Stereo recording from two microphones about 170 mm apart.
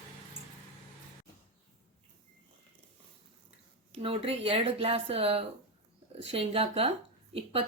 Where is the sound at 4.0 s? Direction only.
35° right (ahead or behind).